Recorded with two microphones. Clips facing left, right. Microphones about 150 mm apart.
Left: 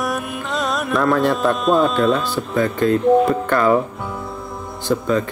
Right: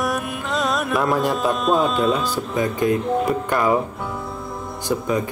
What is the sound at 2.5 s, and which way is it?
Speech, 15° right (ahead or behind).